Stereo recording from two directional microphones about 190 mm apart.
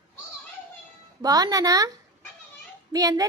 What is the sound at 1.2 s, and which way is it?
Speech, 20° right (ahead or behind).